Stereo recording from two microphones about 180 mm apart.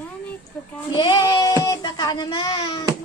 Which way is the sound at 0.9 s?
25° left (ahead or behind).